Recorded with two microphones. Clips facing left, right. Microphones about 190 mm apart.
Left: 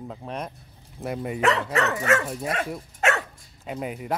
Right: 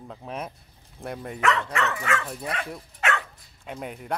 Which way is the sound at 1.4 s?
30° left (ahead or behind).